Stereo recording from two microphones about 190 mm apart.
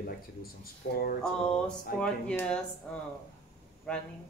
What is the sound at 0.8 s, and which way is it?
Speech, 65° left (ahead or behind).